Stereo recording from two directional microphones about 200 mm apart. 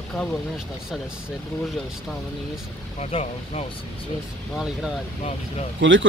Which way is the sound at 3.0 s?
30° left (ahead or behind).